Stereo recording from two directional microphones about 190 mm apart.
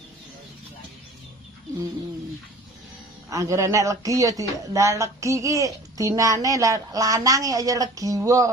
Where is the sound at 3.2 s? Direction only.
15° right (ahead or behind).